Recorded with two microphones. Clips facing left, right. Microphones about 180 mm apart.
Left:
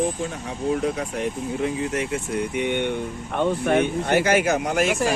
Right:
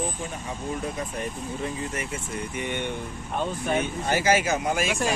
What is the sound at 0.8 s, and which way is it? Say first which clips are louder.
Speech: left 6 dB; 85° left.